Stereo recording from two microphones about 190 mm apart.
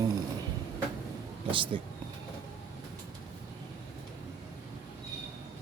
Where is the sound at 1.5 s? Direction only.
25° right (ahead or behind).